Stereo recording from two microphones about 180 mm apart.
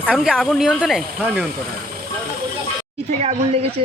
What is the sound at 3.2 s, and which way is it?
Speech, 35° right (ahead or behind).